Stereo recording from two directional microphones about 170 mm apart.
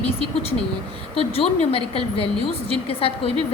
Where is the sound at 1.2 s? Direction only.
35° left (ahead or behind).